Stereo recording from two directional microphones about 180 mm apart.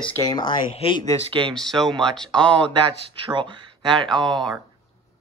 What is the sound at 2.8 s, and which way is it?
Speech, 30° right (ahead or behind).